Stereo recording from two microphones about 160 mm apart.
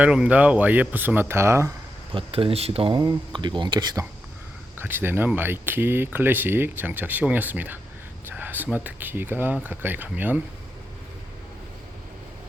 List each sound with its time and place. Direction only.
0.0 s speech: 5° right (ahead or behind)
2.1 s speech: 35° right (ahead or behind)
4.8 s speech: 15° right (ahead or behind)